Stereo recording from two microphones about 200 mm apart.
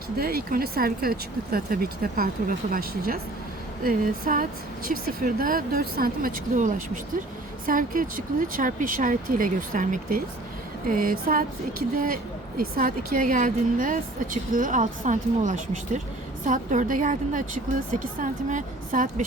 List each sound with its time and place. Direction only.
0.2 s a woman's voice: 50° right (ahead or behind)